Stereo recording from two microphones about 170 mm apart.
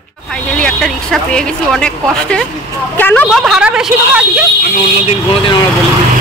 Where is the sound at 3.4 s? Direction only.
5° right (ahead or behind).